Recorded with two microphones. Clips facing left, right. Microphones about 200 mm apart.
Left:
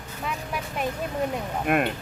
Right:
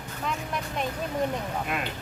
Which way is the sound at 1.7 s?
55° left (ahead or behind).